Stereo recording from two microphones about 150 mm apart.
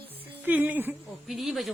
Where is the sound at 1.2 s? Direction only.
Centre (ahead or behind).